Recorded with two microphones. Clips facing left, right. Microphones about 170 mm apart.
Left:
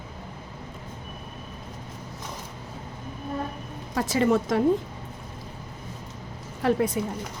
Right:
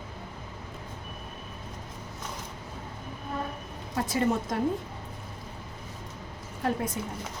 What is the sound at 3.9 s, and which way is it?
Speech, 90° left.